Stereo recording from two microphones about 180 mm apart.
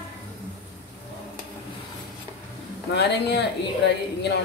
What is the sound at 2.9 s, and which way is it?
Speech, 70° left (ahead or behind).